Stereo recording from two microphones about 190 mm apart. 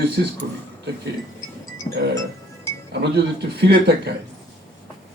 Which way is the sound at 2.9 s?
60° right (ahead or behind).